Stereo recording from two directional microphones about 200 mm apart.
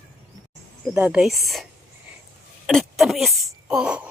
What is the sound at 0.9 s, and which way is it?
Speech, 5° right (ahead or behind).